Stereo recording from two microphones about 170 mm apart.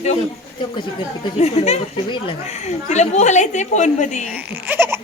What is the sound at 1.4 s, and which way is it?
A woman's voice, 40° left (ahead or behind).